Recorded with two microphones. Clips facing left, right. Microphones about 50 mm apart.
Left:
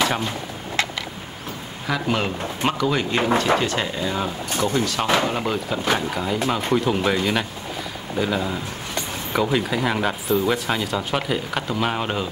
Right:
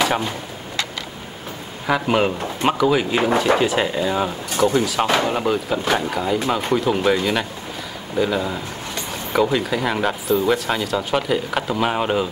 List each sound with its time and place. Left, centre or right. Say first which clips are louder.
0.0 s speech: right 2 dB; centre
1.9 s speech: right 5 dB; centre